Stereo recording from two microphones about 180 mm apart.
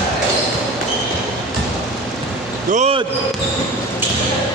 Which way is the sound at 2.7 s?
35° right (ahead or behind).